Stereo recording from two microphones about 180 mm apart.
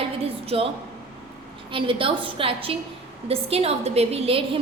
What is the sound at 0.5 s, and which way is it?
Speech, 35° right (ahead or behind).